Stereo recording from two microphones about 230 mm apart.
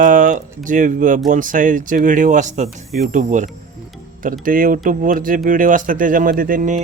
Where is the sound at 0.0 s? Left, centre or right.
Right.